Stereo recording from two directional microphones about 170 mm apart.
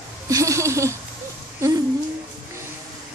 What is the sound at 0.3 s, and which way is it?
Speech, 20° right (ahead or behind).